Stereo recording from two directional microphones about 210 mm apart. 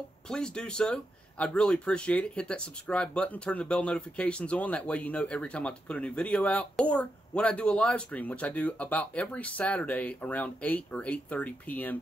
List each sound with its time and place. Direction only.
0.3 s speech: 5° left (ahead or behind)